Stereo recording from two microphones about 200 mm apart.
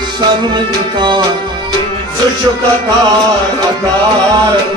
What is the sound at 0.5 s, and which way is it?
Music, 20° right (ahead or behind).